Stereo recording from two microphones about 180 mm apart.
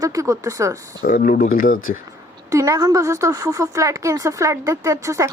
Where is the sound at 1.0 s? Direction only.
50° left (ahead or behind).